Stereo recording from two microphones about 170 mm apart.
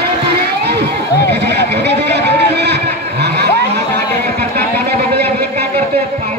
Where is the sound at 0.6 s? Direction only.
75° right (ahead or behind).